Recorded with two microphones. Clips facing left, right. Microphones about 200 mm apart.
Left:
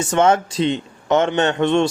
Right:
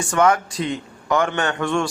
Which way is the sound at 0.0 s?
25° left (ahead or behind).